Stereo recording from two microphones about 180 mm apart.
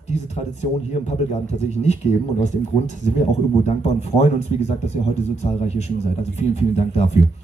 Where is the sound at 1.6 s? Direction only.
40° left (ahead or behind).